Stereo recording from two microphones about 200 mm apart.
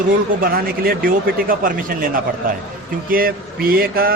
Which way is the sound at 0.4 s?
45° right (ahead or behind).